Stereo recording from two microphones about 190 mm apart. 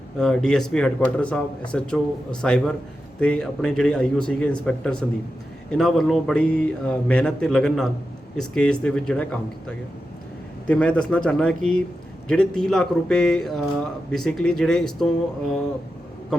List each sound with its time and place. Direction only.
0.2 s speech: 5° left (ahead or behind)